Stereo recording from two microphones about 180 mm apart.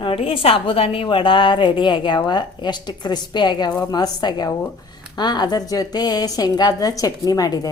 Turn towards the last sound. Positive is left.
turn(degrees=20)  # may be behind; listen again after turning